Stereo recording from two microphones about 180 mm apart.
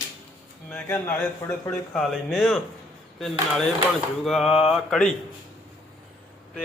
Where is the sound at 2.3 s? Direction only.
Centre (ahead or behind).